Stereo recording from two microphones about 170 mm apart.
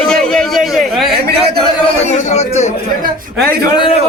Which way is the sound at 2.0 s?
40° left (ahead or behind).